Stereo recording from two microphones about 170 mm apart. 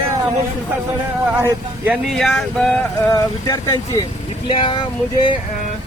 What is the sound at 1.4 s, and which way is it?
Speech, 5° right (ahead or behind).